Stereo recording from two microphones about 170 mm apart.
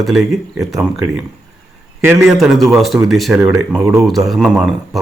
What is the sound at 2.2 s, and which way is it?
A man's voice, centre (ahead or behind).